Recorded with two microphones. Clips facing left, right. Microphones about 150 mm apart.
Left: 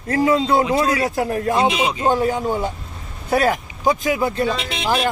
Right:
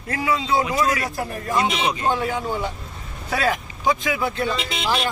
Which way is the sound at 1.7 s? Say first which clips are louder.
Left 4 dB; 10° left (ahead or behind).